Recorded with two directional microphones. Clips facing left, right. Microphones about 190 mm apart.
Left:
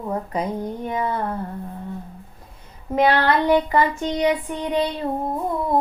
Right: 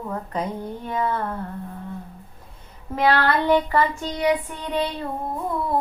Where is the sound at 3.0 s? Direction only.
20° left (ahead or behind).